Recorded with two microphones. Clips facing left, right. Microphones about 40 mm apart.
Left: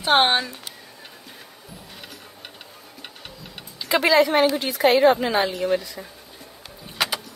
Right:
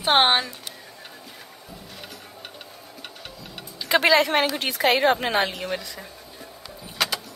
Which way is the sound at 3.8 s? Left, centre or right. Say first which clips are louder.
Left 1 dB; right.